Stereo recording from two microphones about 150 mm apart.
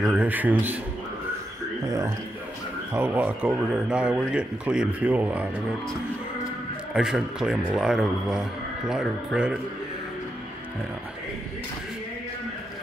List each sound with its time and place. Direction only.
0.0 s speech: 10° right (ahead or behind)
1.9 s a man's voice: 20° right (ahead or behind)
6.9 s a man's voice: 5° right (ahead or behind)